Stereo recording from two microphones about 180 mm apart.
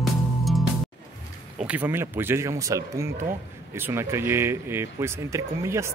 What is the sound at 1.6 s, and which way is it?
Speech, 10° right (ahead or behind).